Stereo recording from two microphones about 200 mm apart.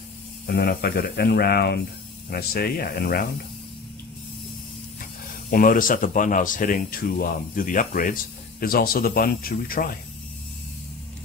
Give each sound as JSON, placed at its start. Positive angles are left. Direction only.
{"t": 0.5, "sound": "speech", "side_deg": 55}
{"t": 5.5, "sound": "speech", "side_deg": 45}